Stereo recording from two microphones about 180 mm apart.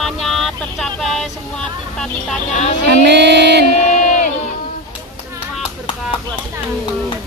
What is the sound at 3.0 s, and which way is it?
Music, 70° right (ahead or behind).